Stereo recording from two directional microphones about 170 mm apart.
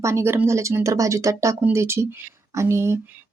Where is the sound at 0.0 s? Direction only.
15° right (ahead or behind).